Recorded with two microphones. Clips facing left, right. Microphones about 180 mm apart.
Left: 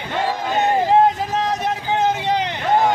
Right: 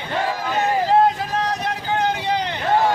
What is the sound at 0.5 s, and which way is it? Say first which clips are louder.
Vehicle: left 2 dB; 20° left (ahead or behind).